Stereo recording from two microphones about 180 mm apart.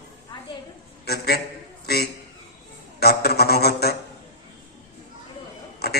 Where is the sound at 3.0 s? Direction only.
60° left (ahead or behind).